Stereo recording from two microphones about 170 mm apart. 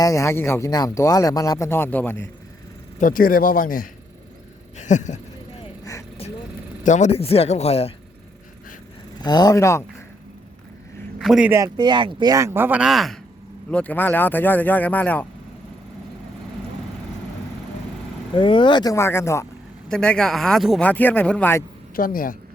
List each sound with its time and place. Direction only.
0.0 s speech: 20° left (ahead or behind)
3.0 s speech: 55° left (ahead or behind)
4.8 s a sound: 45° left (ahead or behind)
5.8 s vehicle: 20° left (ahead or behind)
6.8 s speech: 45° left (ahead or behind)
9.2 s speech: 25° left (ahead or behind)
11.2 s speech: 5° right (ahead or behind)
11.5 s speech: 25° right (ahead or behind); by 15.3 s 10° left (ahead or behind)
18.3 s speech: 30° left (ahead or behind)
19.9 s speech: 5° left (ahead or behind)
21.9 s speech: 55° left (ahead or behind)